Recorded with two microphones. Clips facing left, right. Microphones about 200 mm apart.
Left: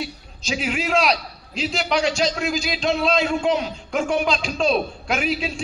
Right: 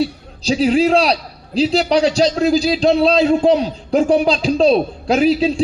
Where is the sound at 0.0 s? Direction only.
35° right (ahead or behind).